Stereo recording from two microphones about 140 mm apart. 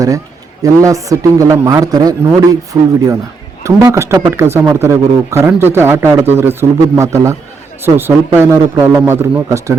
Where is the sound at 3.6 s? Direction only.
20° right (ahead or behind).